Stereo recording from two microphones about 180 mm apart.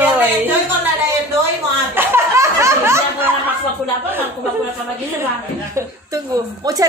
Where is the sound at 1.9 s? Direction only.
10° right (ahead or behind).